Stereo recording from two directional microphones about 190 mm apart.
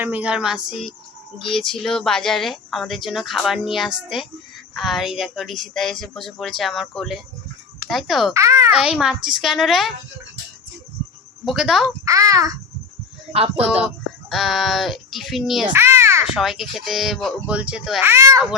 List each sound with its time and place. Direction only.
0.0 s speech: 10° right (ahead or behind)
8.3 s a child's voice: 15° right (ahead or behind)
8.7 s speech: 5° right (ahead or behind)
11.4 s speech: centre (ahead or behind)
12.0 s a child's voice: 20° right (ahead or behind)
13.6 s speech: 5° right (ahead or behind)
15.7 s a sound: 15° right (ahead or behind)
16.2 s speech: 5° right (ahead or behind)
18.1 s a child's voice: 15° right (ahead or behind)